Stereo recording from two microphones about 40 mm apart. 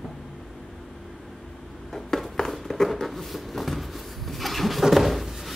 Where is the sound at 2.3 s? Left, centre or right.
Centre.